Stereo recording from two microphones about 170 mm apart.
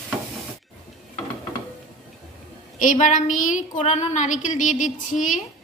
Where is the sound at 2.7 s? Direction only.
50° left (ahead or behind).